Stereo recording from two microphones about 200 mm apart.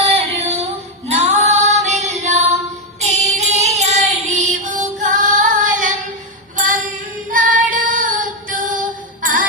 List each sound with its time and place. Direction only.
0.1 s female singing: 30° right (ahead or behind)
3.0 s music: 35° right (ahead or behind)
7.3 s child singing: 40° right (ahead or behind)
9.2 s jingle bell: 40° right (ahead or behind)